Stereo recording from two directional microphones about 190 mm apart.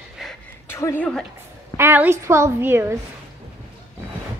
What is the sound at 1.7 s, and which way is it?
A woman's voice, 10° right (ahead or behind).